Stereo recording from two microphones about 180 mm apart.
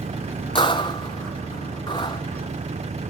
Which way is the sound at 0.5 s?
25° left (ahead or behind).